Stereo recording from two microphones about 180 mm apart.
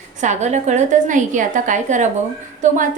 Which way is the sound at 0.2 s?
40° right (ahead or behind).